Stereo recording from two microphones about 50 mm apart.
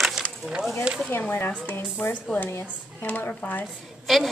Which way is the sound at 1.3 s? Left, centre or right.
Left.